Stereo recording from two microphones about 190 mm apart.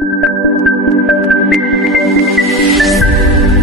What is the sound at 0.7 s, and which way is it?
Music, centre (ahead or behind).